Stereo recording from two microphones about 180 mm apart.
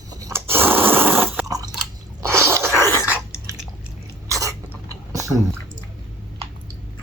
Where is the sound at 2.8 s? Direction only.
15° left (ahead or behind).